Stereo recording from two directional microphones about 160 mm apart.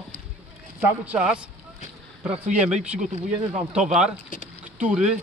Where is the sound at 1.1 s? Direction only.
5° right (ahead or behind).